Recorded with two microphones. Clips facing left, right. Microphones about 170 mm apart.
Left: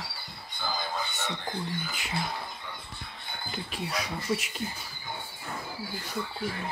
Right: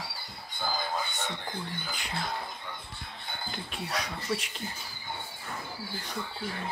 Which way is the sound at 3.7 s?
5° left (ahead or behind).